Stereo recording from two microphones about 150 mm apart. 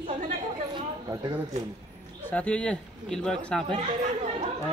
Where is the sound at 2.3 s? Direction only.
10° left (ahead or behind).